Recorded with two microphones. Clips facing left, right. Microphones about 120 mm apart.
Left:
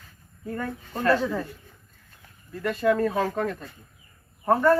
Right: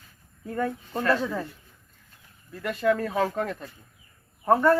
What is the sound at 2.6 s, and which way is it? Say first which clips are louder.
Speech: left 2 dB; 40° left (ahead or behind).